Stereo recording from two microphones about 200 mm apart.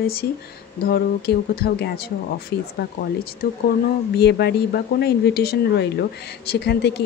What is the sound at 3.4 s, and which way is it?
Speech, 50° left (ahead or behind).